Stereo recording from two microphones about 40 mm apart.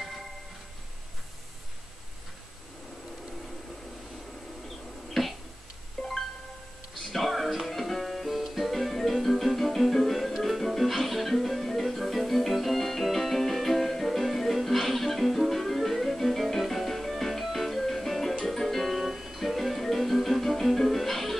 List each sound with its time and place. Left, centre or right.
5.2 s a sound: centre
6.0 s music: centre
19.1 s guitar: centre
19.4 s music: centre